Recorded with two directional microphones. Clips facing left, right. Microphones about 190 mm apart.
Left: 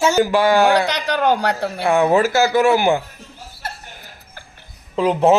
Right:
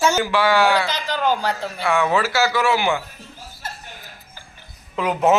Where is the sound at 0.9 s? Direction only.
65° left (ahead or behind).